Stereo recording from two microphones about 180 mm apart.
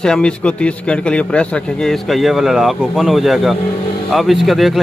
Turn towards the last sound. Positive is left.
turn(degrees=0)  # may be behind; listen again after turning